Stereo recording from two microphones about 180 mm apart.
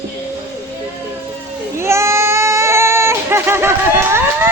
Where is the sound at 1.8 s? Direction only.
15° right (ahead or behind).